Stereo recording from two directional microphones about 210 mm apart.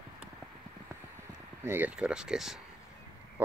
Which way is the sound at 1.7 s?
10° right (ahead or behind).